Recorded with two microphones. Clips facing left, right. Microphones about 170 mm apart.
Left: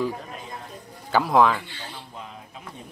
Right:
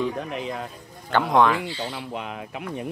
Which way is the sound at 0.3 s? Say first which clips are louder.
Right 8 dB; 85° right.